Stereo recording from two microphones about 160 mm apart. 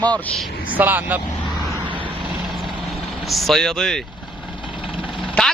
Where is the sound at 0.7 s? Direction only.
10° right (ahead or behind).